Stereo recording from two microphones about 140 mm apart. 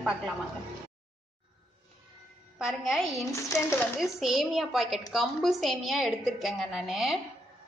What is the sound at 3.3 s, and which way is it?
Speech, 20° left (ahead or behind).